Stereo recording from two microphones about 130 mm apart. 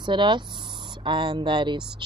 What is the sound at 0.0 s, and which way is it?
Speech, 35° right (ahead or behind).